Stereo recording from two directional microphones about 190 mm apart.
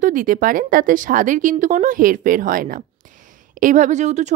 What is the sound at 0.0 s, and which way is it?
A woman's voice, 45° right (ahead or behind).